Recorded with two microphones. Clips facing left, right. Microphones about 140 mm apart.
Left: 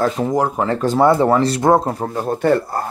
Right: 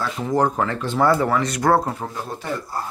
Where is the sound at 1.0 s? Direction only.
25° left (ahead or behind).